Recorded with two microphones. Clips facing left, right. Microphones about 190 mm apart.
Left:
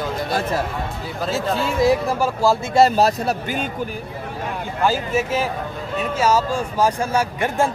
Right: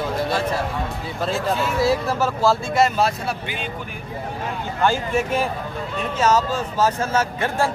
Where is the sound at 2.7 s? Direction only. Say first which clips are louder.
Left 4 dB; 35° left (ahead or behind).